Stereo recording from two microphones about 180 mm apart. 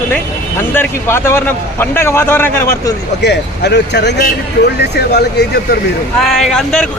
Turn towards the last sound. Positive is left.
turn(degrees=0)  # may be behind; listen again after turning